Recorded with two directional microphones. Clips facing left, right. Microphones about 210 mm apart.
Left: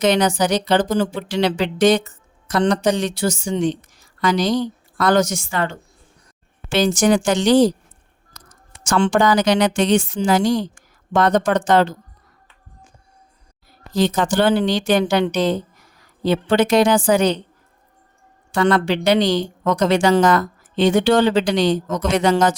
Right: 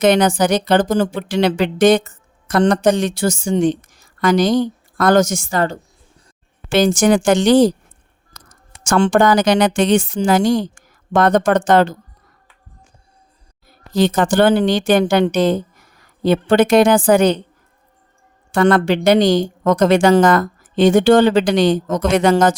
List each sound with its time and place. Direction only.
0.0 s speech: 55° right (ahead or behind)
6.7 s speech: 50° right (ahead or behind)
8.4 s a sound: 55° right (ahead or behind)
8.8 s speech: 50° right (ahead or behind)
13.9 s speech: 55° right (ahead or behind)
18.5 s speech: 50° right (ahead or behind)